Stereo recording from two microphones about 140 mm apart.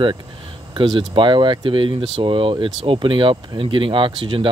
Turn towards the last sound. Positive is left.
turn(degrees=-35)  # may be behind; listen again after turning